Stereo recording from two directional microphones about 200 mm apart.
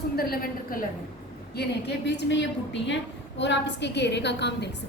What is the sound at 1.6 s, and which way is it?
A woman's voice, 60° left (ahead or behind).